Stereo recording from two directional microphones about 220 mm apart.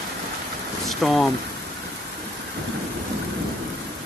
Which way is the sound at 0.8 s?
Centre (ahead or behind).